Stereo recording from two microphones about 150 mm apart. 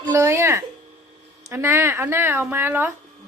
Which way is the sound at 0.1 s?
15° right (ahead or behind).